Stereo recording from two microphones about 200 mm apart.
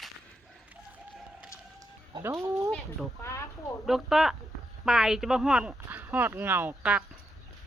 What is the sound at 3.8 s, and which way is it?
A woman's voice, centre (ahead or behind).